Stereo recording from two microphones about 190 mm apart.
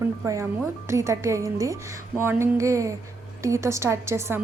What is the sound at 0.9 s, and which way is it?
A woman's voice, 15° right (ahead or behind).